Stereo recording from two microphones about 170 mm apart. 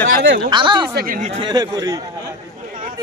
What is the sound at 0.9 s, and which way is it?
Speech, 55° right (ahead or behind).